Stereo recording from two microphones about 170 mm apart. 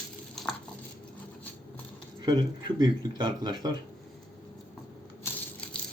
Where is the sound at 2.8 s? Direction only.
25° right (ahead or behind).